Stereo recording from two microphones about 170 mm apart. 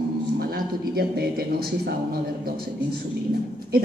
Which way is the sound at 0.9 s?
65° right (ahead or behind).